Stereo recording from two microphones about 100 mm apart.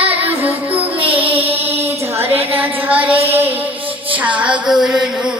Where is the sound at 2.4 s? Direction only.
20° right (ahead or behind).